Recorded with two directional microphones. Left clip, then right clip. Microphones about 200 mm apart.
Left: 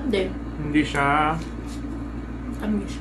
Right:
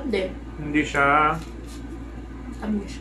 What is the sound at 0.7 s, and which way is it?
Speech, centre (ahead or behind).